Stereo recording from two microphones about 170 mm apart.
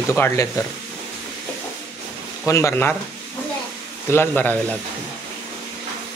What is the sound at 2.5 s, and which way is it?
Speech, 15° left (ahead or behind).